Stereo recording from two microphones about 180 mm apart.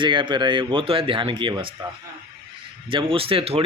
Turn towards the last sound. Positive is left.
turn(degrees=-30)  # may be behind; listen again after turning